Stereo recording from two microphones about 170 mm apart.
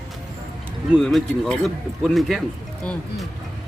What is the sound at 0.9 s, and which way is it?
Speech, 5° left (ahead or behind).